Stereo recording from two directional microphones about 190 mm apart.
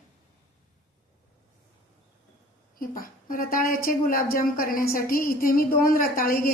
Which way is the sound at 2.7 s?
50° left (ahead or behind).